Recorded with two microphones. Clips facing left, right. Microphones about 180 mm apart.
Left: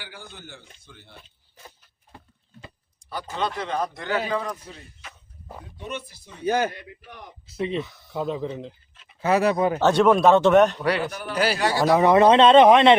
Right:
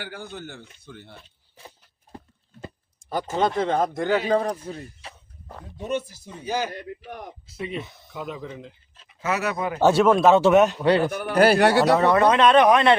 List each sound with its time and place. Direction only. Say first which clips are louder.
0.0 s speech: right 7 dB; 55° right (ahead or behind)
3.1 s a man's voice: right 5 dB; 45° right (ahead or behind)
4.3 s speech: right 6 dB; 40° right (ahead or behind)
5.0 s a sound: right 2 dB; 30° right (ahead or behind)
5.7 s speech: right 8 dB; 40° right (ahead or behind)
6.4 s speech: left 4 dB; 55° left (ahead or behind)
7.1 s a man's voice: right 6 dB; 50° right (ahead or behind)
7.8 s speech: left 4 dB; 25° right (ahead or behind)
8.1 s speech: left 6 dB; 30° left (ahead or behind)
9.8 s a man's voice: right 1 dB; 5° right (ahead or behind)
11.0 s speech: right 6 dB; 55° right (ahead or behind)
11.9 s speech: left 3 dB; 20° left (ahead or behind)